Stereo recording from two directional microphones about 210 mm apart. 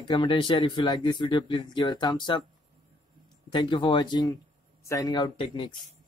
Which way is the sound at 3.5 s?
25° left (ahead or behind).